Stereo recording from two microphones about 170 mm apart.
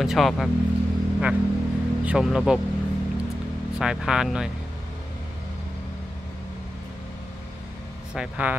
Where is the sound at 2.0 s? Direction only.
5° right (ahead or behind).